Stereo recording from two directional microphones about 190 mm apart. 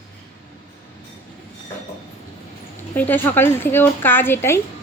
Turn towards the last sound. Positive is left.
turn(degrees=15)  # may be behind; listen again after turning